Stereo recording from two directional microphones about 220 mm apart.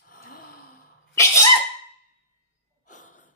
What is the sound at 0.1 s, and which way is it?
Sigh, 40° left (ahead or behind).